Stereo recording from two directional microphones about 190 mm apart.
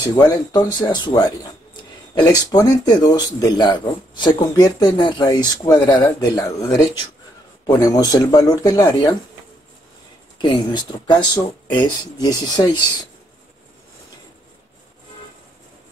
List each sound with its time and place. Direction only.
0.0 s speech: 20° left (ahead or behind)
10.4 s speech: 25° left (ahead or behind)